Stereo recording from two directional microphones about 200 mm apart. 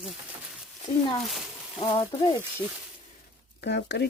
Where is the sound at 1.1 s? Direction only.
Centre (ahead or behind).